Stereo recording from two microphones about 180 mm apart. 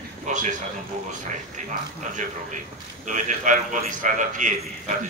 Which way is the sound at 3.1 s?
45° right (ahead or behind).